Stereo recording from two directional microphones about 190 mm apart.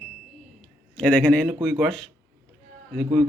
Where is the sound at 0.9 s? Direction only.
10° left (ahead or behind).